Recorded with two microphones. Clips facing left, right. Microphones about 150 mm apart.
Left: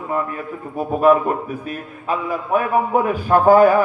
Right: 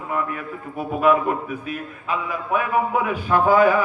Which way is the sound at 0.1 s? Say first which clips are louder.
Left 2 dB; 35° left (ahead or behind).